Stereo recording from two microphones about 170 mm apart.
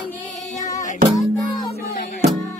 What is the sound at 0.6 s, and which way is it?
Music, 45° left (ahead or behind).